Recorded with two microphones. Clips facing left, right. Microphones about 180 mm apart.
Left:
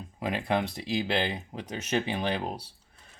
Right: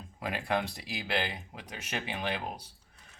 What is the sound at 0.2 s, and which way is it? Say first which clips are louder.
Speech: left 4 dB; 20° left (ahead or behind).